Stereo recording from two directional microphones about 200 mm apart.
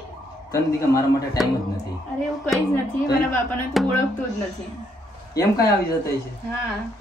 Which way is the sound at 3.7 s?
Centre (ahead or behind).